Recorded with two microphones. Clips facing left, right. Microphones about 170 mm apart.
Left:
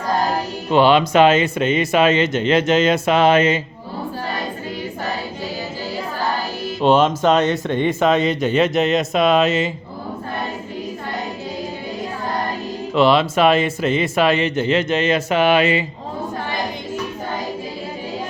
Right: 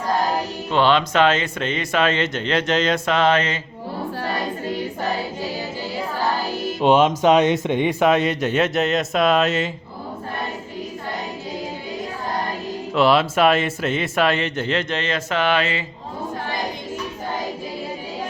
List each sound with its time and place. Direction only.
0.7 s speech: 10° left (ahead or behind)
6.8 s speech: 15° right (ahead or behind)
12.9 s speech: 5° right (ahead or behind)